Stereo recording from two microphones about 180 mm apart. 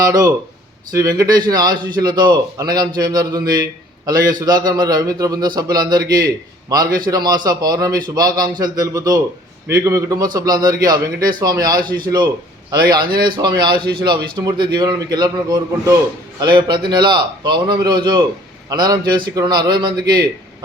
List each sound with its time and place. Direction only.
0.1 s a man's voice: 20° right (ahead or behind)
3.5 s a sound: 20° right (ahead or behind)
4.3 s a man's voice: 20° right (ahead or behind)
13.0 s speech: 55° right (ahead or behind)
13.2 s a man's voice: 25° right (ahead or behind)